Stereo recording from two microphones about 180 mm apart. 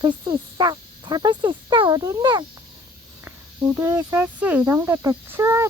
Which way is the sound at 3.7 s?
15° right (ahead or behind).